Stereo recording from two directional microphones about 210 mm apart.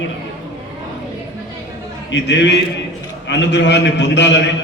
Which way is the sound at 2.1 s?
55° left (ahead or behind).